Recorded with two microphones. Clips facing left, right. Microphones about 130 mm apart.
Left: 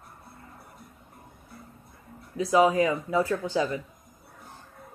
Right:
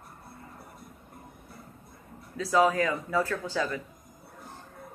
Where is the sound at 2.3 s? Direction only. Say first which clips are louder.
Left 3 dB; 15° left (ahead or behind).